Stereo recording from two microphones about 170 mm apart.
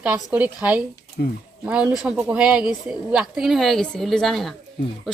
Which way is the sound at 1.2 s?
60° left (ahead or behind).